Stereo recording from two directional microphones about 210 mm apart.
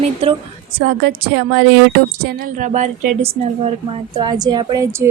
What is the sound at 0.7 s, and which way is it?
A woman's voice, 45° right (ahead or behind).